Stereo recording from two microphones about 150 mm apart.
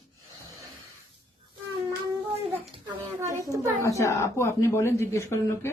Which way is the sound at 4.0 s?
20° left (ahead or behind).